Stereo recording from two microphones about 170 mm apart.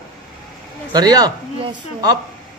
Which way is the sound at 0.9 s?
20° right (ahead or behind).